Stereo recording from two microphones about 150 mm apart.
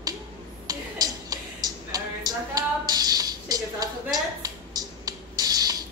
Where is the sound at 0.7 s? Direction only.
25° right (ahead or behind).